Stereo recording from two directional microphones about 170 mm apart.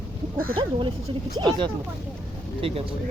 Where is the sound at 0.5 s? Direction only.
30° right (ahead or behind).